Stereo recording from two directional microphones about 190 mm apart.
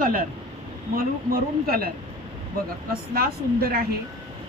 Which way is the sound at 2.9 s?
55° right (ahead or behind).